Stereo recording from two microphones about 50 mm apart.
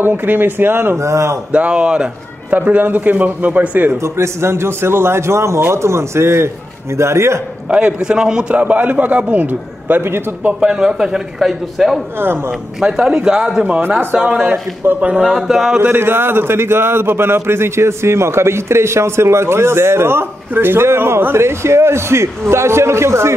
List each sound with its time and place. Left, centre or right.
0.0 s speech: right
0.9 s a man's voice: right
1.5 s speech: right
2.5 s a man's voice: right
4.0 s a man's voice: right
7.7 s a man's voice: right
8.5 s a man's voice: right
10.6 s a man's voice: centre
12.2 s speech: right
12.8 s a man's voice: centre
13.7 s a man's voice: right
14.1 s a man's voice: centre
15.3 s a man's voice: centre
15.8 s a man's voice: right